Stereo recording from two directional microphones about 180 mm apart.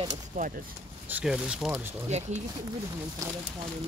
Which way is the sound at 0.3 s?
40° right (ahead or behind).